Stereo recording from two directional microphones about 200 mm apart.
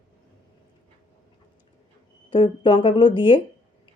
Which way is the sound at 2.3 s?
25° left (ahead or behind).